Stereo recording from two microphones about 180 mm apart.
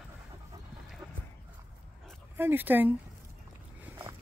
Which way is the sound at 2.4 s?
10° right (ahead or behind).